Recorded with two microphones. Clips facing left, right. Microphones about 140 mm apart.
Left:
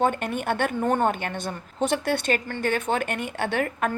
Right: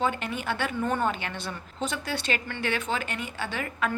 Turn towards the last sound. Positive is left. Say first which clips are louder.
# left 5 dB
turn(degrees=50)  # may be behind; listen again after turning